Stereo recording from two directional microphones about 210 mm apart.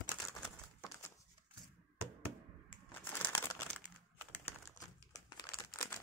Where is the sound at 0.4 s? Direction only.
10° left (ahead or behind).